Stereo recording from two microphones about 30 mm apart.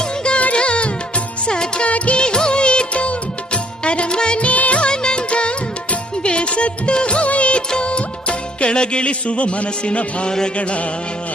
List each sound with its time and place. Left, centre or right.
0.5 s music: left
1.8 s music of bollywood: left
2.2 s music of bollywood: left
4.5 s music of bollywood: left
4.8 s music: left
7.3 s music of bollywood: left
7.8 s music: left